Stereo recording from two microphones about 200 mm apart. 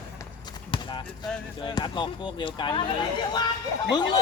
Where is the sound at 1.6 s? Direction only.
20° left (ahead or behind).